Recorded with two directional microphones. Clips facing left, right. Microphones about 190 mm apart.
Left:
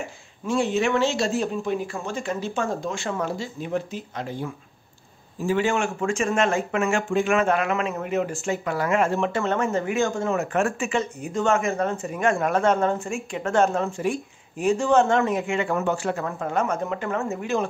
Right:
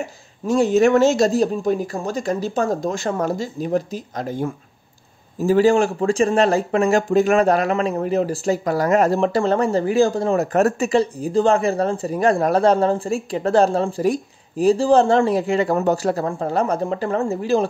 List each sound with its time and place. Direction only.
0.5 s speech: 40° right (ahead or behind)